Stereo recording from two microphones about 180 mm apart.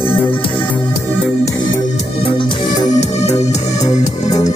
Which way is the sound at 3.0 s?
40° left (ahead or behind).